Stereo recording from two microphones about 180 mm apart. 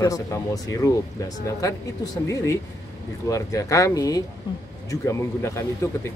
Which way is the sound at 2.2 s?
15° left (ahead or behind).